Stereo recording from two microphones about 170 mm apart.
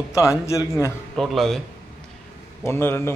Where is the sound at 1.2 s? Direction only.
Centre (ahead or behind).